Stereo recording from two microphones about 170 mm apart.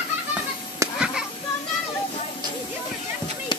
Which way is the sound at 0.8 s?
20° right (ahead or behind).